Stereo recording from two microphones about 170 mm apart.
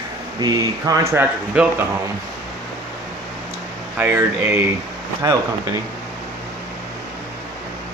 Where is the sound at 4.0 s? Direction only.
10° right (ahead or behind).